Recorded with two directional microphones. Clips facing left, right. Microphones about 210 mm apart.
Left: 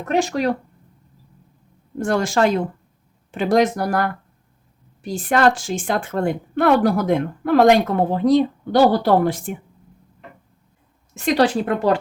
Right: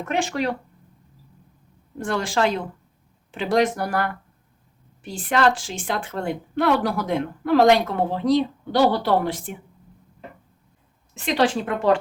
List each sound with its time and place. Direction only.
0.0 s a woman's voice: 40° left (ahead or behind)
2.0 s a woman's voice: 45° left (ahead or behind)
11.1 s a woman's voice: 40° left (ahead or behind)